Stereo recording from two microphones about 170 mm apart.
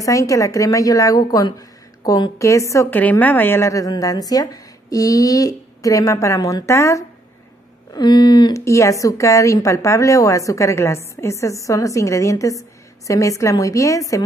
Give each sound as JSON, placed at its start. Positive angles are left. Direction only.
{"t": 0.0, "sound": "a woman's voice", "side_deg": 20}